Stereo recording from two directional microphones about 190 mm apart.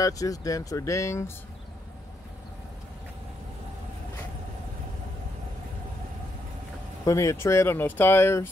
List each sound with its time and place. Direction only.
0.0 s speech: 20° left (ahead or behind)
7.1 s speech: 15° left (ahead or behind)